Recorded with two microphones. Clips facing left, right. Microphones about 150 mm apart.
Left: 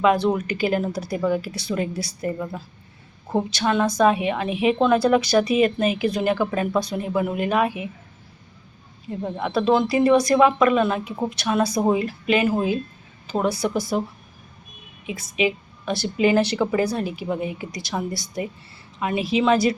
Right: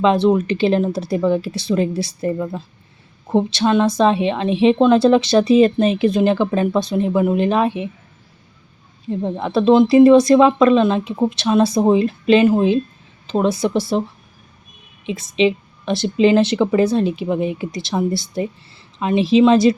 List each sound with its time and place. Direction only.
0.0 s a woman's voice: 25° right (ahead or behind)
9.0 s a woman's voice: 25° right (ahead or behind)
15.0 s a woman's voice: 25° right (ahead or behind)